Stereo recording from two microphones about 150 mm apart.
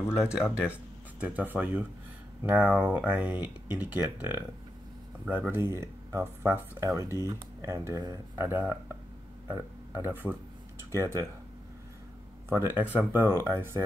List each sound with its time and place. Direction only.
0.2 s speech: 5° right (ahead or behind); by 11.2 s 20° right (ahead or behind)
12.5 s speech: 15° right (ahead or behind)